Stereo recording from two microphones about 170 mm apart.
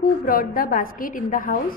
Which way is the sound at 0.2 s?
55° left (ahead or behind).